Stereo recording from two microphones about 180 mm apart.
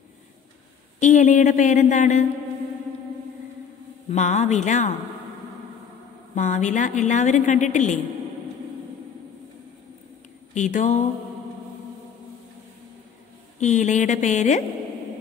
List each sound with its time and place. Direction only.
0.9 s a woman's voice: 40° left (ahead or behind)
4.1 s a woman's voice: 40° left (ahead or behind)
6.3 s a woman's voice: 45° left (ahead or behind)
10.5 s a woman's voice: 45° left (ahead or behind)
13.6 s a woman's voice: 40° left (ahead or behind)